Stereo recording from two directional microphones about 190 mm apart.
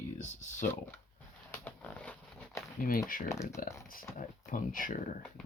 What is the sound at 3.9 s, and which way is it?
Speech, 45° left (ahead or behind).